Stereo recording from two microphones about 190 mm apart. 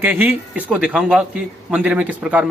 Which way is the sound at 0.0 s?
10° right (ahead or behind).